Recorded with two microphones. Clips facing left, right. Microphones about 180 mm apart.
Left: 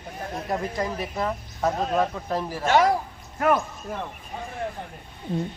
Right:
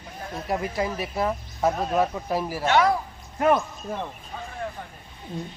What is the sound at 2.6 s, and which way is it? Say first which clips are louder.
Speech: left 1 dB; 40° left (ahead or behind).